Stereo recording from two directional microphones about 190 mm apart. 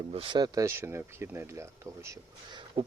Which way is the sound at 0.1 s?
30° right (ahead or behind).